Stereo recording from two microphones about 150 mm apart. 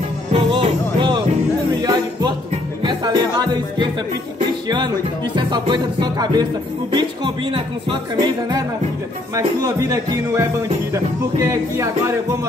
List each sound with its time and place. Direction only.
0.3 s music: 35° right (ahead or behind)
1.8 s music: 25° right (ahead or behind)
4.6 s speech: 30° right (ahead or behind)
9.3 s speech: 20° right (ahead or behind)